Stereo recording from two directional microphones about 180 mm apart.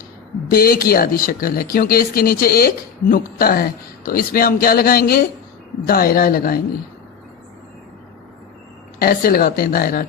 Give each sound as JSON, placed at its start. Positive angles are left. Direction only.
{"t": 0.5, "sound": "a man's voice", "side_deg": 55}
{"t": 9.0, "sound": "speech", "side_deg": 55}